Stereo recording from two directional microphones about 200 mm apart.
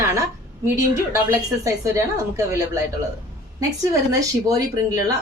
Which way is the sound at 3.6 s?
15° right (ahead or behind).